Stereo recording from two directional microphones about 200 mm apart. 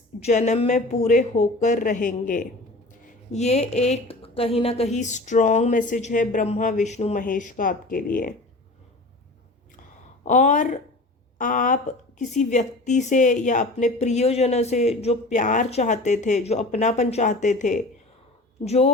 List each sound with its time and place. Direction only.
0.2 s a woman's voice: 35° left (ahead or behind)
10.2 s a woman's voice: 35° left (ahead or behind)